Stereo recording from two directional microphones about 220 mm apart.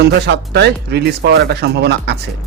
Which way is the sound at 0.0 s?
50° right (ahead or behind).